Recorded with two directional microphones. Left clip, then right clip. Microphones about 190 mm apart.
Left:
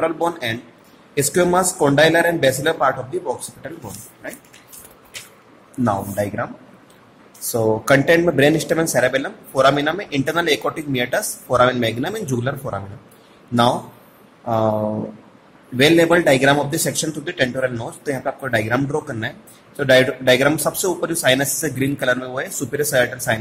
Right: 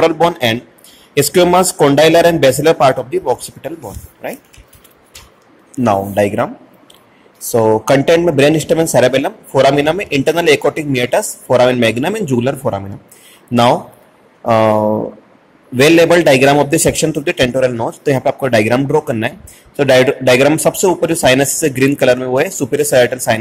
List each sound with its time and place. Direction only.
0.0 s speech: 30° right (ahead or behind)
5.9 s speech: 25° right (ahead or behind)
7.5 s speech: 20° right (ahead or behind)
14.4 s speech: 25° right (ahead or behind)
15.8 s speech: 30° right (ahead or behind)